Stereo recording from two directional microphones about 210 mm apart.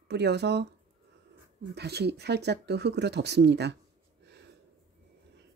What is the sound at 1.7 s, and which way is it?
Speech, 50° right (ahead or behind).